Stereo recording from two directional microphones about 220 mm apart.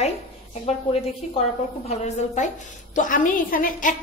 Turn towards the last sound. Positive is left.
turn(degrees=35)  # may be behind; listen again after turning